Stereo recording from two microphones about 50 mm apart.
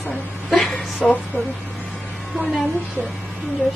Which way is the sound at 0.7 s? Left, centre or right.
Left.